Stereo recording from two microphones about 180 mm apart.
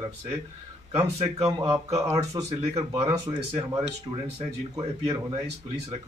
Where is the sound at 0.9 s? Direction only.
35° right (ahead or behind).